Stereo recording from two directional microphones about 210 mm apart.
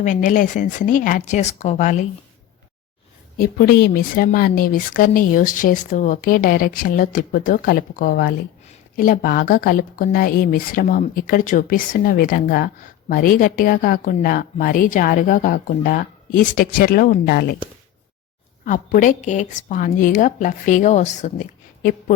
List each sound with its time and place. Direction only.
0.0 s a woman's voice: 35° left (ahead or behind)
3.3 s a woman's voice: 45° left (ahead or behind)
18.6 s a woman's voice: 40° left (ahead or behind)